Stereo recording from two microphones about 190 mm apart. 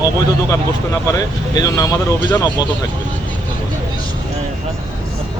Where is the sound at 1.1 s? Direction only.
20° left (ahead or behind).